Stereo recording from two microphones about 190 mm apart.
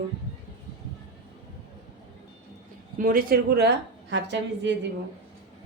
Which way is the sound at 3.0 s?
50° right (ahead or behind).